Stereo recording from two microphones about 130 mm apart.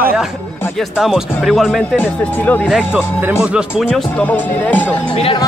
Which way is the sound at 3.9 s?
10° left (ahead or behind).